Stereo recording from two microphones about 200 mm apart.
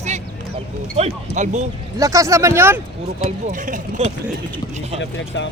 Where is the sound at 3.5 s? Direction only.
40° right (ahead or behind).